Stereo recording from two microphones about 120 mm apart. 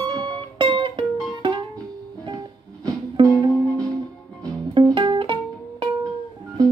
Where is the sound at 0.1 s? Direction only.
40° right (ahead or behind).